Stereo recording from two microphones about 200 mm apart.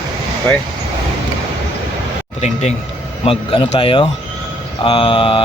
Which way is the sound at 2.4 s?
35° left (ahead or behind).